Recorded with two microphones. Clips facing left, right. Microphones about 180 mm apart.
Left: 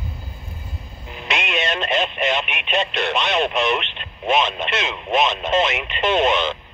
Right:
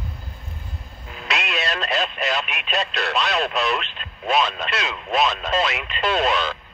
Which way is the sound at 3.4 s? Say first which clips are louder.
Left 3 dB; 25° left (ahead or behind).